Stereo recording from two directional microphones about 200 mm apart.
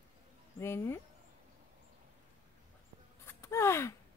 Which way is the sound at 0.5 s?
15° left (ahead or behind).